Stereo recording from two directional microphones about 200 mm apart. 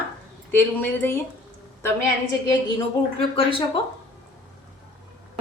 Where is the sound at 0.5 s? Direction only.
10° left (ahead or behind).